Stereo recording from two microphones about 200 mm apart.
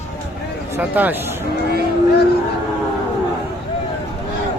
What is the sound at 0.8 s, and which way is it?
Speech, 10° right (ahead or behind).